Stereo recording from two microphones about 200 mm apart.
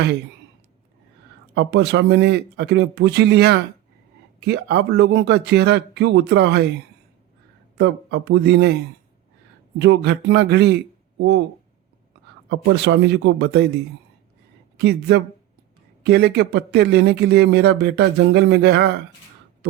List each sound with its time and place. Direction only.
1.5 s speech: 60° right (ahead or behind)
7.8 s speech: 60° right (ahead or behind)
12.5 s speech: 60° right (ahead or behind)
14.8 s speech: 55° right (ahead or behind)